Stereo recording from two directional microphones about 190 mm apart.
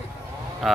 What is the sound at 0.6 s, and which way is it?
Speech, centre (ahead or behind).